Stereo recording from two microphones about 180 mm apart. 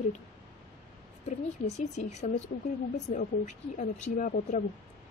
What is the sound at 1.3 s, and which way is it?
A woman's voice, 40° left (ahead or behind).